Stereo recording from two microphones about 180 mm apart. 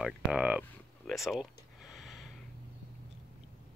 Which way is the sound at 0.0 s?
5° right (ahead or behind).